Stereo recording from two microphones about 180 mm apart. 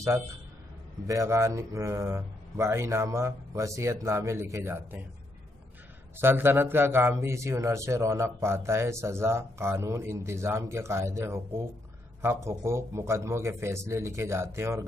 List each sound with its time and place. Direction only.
1.0 s a man's voice: 15° right (ahead or behind)
6.1 s a man's voice: 10° right (ahead or behind)